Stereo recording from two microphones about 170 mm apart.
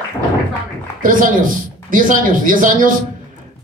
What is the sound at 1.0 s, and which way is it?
A man's voice, 55° right (ahead or behind).